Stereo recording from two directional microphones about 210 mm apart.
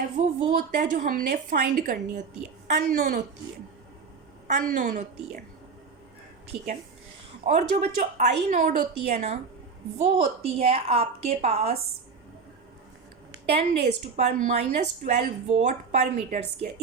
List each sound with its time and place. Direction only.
0.2 s a woman's voice: 35° right (ahead or behind)
4.4 s a woman's voice: 35° right (ahead or behind)
7.4 s a woman's voice: 35° right (ahead or behind)
13.6 s a woman's voice: 30° right (ahead or behind)